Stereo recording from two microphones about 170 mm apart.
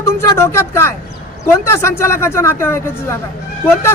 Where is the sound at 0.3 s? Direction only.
15° left (ahead or behind).